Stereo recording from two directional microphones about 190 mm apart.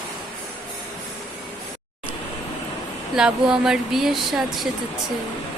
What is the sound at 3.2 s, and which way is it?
Speech, 5° right (ahead or behind).